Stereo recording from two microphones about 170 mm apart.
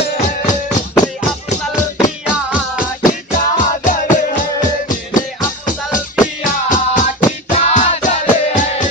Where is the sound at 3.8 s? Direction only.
50° left (ahead or behind).